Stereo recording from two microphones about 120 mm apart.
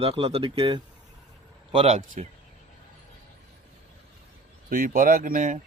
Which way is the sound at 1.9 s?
75° right (ahead or behind).